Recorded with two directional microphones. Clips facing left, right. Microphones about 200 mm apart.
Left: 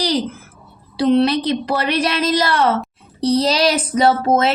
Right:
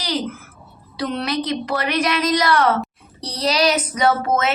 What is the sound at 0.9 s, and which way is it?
A woman's voice, 30° left (ahead or behind).